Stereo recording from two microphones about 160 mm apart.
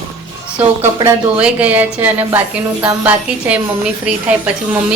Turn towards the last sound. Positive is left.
turn(degrees=-10)  # may be behind; listen again after turning